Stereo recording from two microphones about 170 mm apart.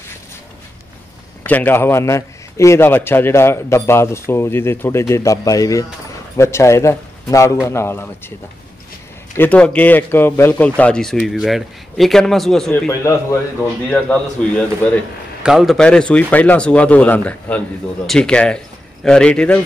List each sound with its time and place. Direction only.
1.4 s a man's voice: 10° left (ahead or behind)
9.4 s a man's voice: 10° left (ahead or behind)